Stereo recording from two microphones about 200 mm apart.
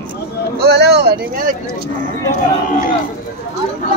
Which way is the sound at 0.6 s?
55° right (ahead or behind).